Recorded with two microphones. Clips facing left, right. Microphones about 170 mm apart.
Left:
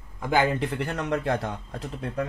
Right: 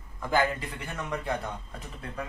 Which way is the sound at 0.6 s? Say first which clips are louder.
Left 9 dB; 70° left (ahead or behind).